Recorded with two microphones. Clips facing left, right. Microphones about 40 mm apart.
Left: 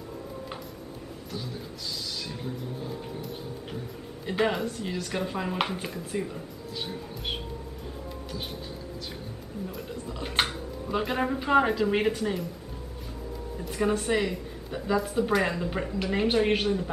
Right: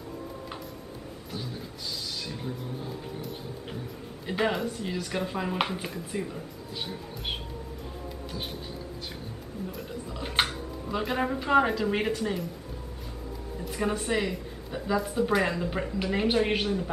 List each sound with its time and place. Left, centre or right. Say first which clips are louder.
2.2 s speech: even; centre
4.3 s speech: left 1 dB; centre
8.3 s speech: even; centre
9.7 s speech: left 1 dB; centre
13.7 s speech: left 2 dB; centre